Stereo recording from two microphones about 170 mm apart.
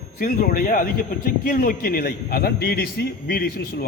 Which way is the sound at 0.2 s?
55° left (ahead or behind).